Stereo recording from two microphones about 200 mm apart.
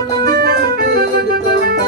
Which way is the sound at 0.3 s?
50° right (ahead or behind).